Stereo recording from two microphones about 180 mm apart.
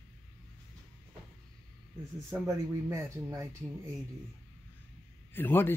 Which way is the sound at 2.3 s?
15° right (ahead or behind).